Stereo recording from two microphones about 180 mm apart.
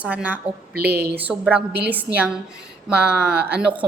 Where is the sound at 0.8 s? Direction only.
60° right (ahead or behind).